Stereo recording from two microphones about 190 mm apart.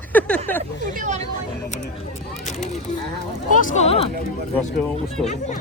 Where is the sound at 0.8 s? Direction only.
45° right (ahead or behind).